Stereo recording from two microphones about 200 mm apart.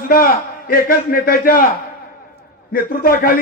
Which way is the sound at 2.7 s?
45° left (ahead or behind).